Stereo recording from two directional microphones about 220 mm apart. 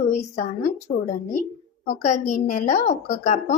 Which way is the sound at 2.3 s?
35° left (ahead or behind).